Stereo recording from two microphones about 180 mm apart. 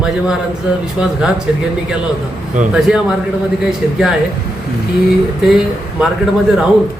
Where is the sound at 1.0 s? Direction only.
10° right (ahead or behind).